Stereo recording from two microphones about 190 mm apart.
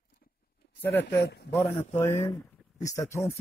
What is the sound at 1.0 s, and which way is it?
Speech, 60° left (ahead or behind).